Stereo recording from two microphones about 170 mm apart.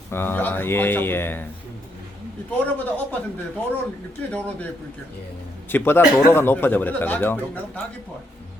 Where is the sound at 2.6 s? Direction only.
10° left (ahead or behind).